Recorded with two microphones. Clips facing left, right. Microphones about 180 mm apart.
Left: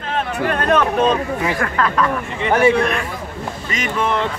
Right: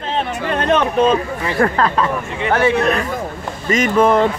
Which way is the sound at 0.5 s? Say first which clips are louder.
Right 2 dB; 25° right (ahead or behind).